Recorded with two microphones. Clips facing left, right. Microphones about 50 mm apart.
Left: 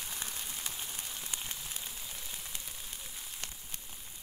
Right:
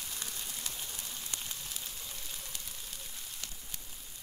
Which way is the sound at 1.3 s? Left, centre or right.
Centre.